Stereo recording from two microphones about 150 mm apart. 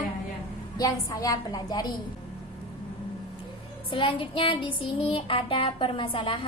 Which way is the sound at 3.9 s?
35° left (ahead or behind).